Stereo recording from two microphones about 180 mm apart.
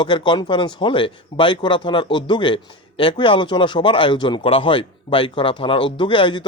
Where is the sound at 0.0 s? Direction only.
25° left (ahead or behind).